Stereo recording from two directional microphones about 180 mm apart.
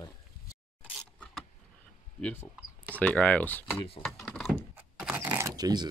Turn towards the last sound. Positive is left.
turn(degrees=-20)  # may be behind; listen again after turning